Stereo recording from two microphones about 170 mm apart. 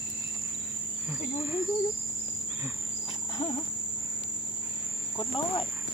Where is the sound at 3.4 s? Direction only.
25° left (ahead or behind).